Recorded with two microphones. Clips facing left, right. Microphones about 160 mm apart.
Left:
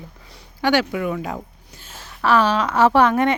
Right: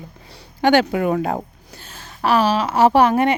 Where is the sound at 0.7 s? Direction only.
50° right (ahead or behind).